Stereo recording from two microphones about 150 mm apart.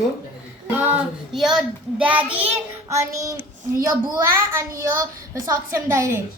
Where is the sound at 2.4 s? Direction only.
20° right (ahead or behind).